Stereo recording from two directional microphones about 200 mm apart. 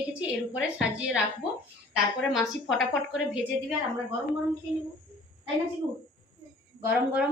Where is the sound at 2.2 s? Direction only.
Centre (ahead or behind).